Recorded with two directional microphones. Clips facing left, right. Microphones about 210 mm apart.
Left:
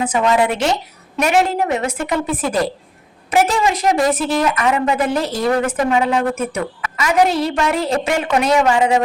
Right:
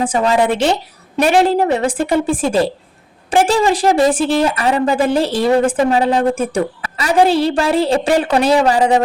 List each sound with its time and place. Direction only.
0.0 s a woman's voice: 30° right (ahead or behind)